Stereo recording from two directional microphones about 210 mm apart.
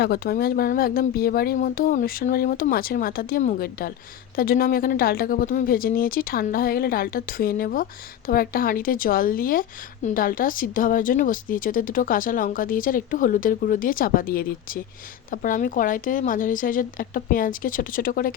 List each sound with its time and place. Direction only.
0.0 s a woman's voice: 45° left (ahead or behind)